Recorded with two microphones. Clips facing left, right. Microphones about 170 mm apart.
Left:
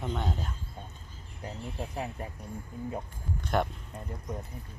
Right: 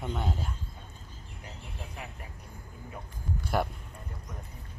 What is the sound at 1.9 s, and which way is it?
Speech, 35° left (ahead or behind).